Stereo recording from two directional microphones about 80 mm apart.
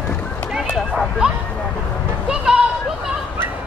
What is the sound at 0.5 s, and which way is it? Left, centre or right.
Bow-wow, centre.